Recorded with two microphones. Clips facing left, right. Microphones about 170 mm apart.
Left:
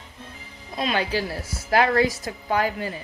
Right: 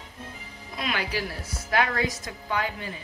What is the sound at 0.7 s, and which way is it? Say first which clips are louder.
A woman's voice: left 5 dB; 25° left (ahead or behind).